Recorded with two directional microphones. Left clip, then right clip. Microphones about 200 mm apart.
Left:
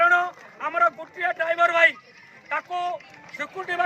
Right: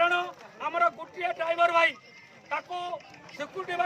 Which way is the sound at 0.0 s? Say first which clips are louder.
Left 7 dB; 5° right (ahead or behind).